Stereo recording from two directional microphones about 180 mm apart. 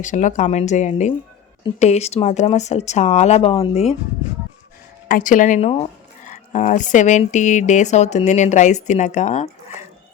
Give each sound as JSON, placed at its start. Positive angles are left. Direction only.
{"t": 0.0, "sound": "speech", "side_deg": 45}
{"t": 5.0, "sound": "speech", "side_deg": 50}